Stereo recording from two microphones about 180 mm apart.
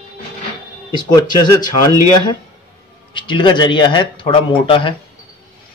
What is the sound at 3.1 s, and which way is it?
Speech, 25° left (ahead or behind).